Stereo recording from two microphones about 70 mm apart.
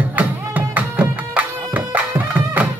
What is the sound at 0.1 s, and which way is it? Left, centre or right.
Music, right.